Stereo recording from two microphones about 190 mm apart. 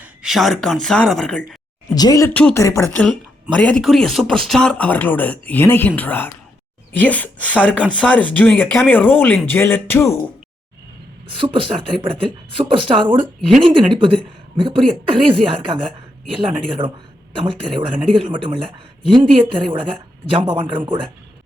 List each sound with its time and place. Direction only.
0.0 s speech: 5° right (ahead or behind)
2.0 s speech: 20° left (ahead or behind)
11.3 s speech: 25° right (ahead or behind)